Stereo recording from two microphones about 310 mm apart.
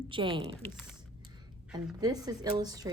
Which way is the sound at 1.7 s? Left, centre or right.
Centre.